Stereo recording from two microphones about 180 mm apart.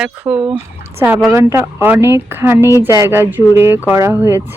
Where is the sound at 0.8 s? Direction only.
15° right (ahead or behind).